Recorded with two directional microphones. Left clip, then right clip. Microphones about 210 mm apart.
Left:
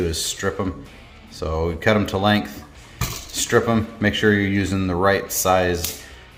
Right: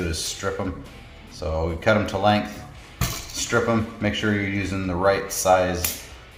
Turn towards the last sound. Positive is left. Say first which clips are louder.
# left 1 dB
turn(degrees=40)  # may be behind; listen again after turning